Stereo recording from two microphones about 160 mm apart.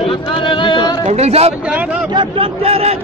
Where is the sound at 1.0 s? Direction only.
40° right (ahead or behind).